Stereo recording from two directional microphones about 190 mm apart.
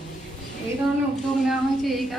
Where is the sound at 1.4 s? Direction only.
Centre (ahead or behind).